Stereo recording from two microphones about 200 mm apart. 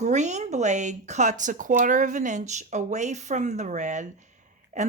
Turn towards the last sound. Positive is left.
turn(degrees=-35)  # may be behind; listen again after turning